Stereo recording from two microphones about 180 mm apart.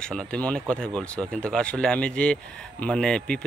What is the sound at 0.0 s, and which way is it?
Speech, 5° left (ahead or behind).